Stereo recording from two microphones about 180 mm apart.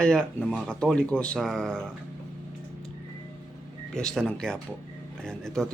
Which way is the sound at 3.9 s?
5° left (ahead or behind).